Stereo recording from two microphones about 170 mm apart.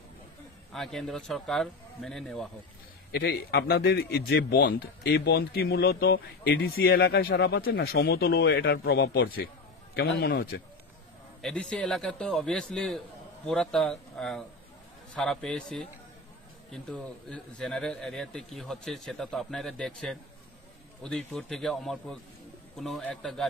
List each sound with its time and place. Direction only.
0.7 s a man's voice: centre (ahead or behind)
3.1 s speech: 70° left (ahead or behind)
11.4 s a man's voice: 5° left (ahead or behind)
21.3 s a man's voice: centre (ahead or behind)